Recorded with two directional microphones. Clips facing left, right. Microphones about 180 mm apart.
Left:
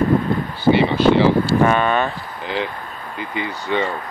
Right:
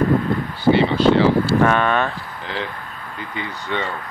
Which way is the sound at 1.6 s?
5° left (ahead or behind).